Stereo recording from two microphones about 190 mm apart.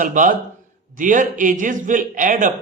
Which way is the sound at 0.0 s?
45° right (ahead or behind).